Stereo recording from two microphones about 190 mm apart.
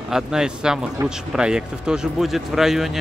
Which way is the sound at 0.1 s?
5° right (ahead or behind).